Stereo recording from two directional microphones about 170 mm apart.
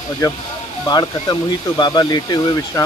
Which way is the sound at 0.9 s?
25° left (ahead or behind).